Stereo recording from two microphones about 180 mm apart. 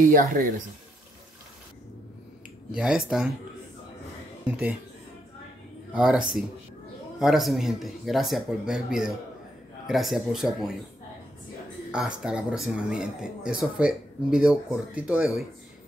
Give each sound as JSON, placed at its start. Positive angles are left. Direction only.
{"t": 0.0, "sound": "speech", "side_deg": -50}
{"t": 2.7, "sound": "speech", "side_deg": -5}
{"t": 4.5, "sound": "speech", "side_deg": -5}
{"t": 5.9, "sound": "speech", "side_deg": -5}
{"t": 11.9, "sound": "speech", "side_deg": -5}